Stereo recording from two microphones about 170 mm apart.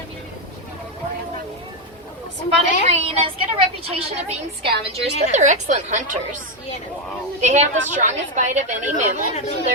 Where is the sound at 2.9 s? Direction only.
35° right (ahead or behind).